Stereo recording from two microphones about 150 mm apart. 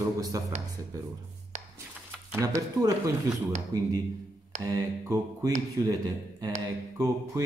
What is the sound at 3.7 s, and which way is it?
A man's voice, 25° right (ahead or behind).